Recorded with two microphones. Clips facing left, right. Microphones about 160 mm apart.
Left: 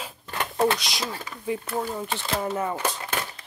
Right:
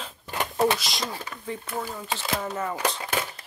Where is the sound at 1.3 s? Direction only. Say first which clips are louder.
Left 5 dB; 15° left (ahead or behind).